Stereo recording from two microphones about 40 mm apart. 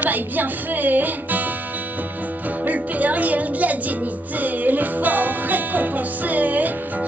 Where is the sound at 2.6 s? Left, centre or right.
Right.